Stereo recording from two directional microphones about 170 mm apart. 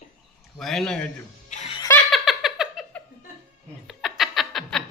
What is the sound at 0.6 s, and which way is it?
Speech, centre (ahead or behind).